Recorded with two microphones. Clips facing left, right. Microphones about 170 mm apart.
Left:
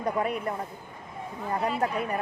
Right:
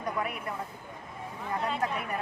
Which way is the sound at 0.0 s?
35° left (ahead or behind).